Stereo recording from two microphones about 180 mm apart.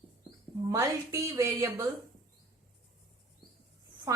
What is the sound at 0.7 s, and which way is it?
A woman's voice, 15° right (ahead or behind).